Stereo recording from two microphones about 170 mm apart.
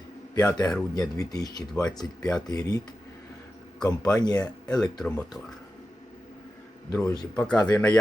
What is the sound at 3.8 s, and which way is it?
Speech, 25° left (ahead or behind).